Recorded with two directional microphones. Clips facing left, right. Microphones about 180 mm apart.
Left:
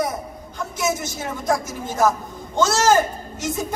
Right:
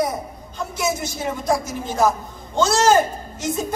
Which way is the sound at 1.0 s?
15° right (ahead or behind).